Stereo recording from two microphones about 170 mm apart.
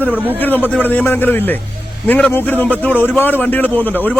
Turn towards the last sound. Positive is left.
turn(degrees=10)  # may be behind; listen again after turning